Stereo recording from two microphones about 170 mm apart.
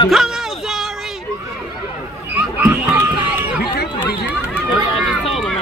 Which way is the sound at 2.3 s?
10° right (ahead or behind).